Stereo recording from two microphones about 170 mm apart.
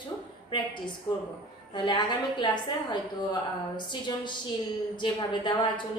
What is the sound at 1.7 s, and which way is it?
A woman's voice, 25° left (ahead or behind).